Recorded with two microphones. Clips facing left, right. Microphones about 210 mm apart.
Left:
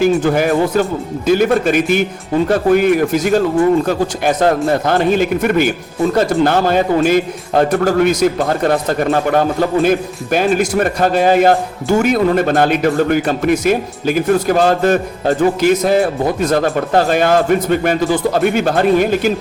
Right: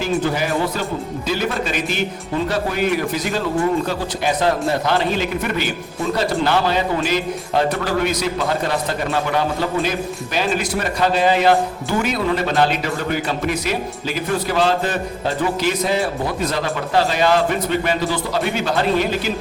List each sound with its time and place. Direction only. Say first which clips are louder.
0.0 s speech: left 7 dB; 50° left (ahead or behind)